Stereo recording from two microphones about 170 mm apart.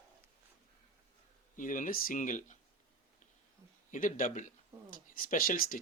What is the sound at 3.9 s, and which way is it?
Speech, 50° left (ahead or behind).